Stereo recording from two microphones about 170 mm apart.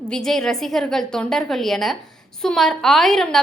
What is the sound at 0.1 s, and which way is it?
A woman's voice, 5° left (ahead or behind).